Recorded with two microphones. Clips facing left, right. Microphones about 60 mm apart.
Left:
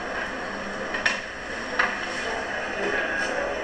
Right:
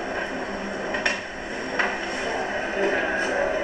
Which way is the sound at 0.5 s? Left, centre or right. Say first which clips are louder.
Right 2 dB; right.